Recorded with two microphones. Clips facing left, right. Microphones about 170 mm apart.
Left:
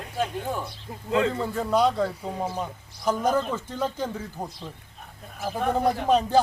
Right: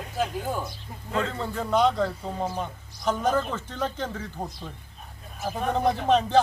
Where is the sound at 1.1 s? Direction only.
5° left (ahead or behind).